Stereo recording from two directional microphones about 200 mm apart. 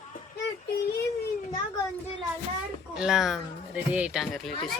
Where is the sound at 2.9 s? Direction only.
5° right (ahead or behind).